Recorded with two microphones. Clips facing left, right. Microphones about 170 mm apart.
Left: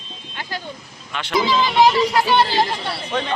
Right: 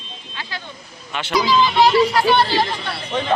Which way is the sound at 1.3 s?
25° left (ahead or behind).